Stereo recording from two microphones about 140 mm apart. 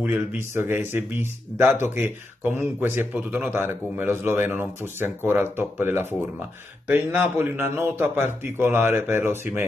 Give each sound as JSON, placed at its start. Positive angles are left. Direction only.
{"t": 0.0, "sound": "speech", "side_deg": -10}